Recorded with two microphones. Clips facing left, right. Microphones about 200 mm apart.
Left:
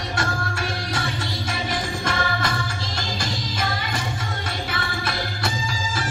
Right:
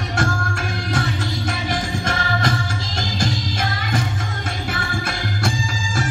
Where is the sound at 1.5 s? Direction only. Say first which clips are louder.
Right 1 dB; 45° right (ahead or behind).